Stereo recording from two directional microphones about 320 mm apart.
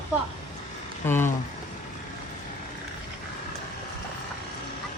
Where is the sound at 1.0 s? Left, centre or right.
Centre.